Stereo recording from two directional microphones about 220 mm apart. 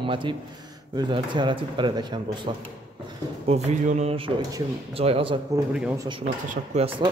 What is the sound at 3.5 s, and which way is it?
Speech, 30° right (ahead or behind).